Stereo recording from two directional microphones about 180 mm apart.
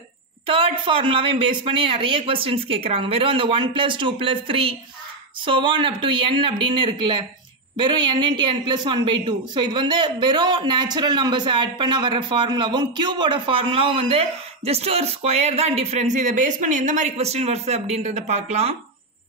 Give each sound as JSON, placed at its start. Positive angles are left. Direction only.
{"t": 0.5, "sound": "speech", "side_deg": -30}